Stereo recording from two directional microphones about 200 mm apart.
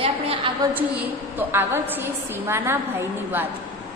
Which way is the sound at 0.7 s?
10° right (ahead or behind).